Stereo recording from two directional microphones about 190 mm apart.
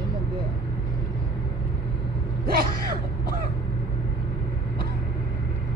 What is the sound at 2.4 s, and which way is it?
Music, 50° right (ahead or behind).